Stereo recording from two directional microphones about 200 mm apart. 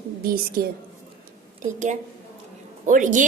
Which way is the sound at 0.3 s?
50° right (ahead or behind).